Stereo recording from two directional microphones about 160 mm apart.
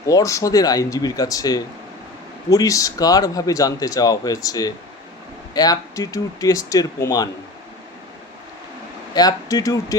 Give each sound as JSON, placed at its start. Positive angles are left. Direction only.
{"t": 0.1, "sound": "speech", "side_deg": 20}
{"t": 9.1, "sound": "speech", "side_deg": 25}